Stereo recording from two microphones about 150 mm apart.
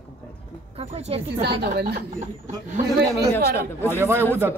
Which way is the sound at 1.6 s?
90° right.